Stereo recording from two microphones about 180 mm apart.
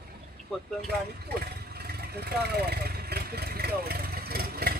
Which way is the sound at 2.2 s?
65° right (ahead or behind).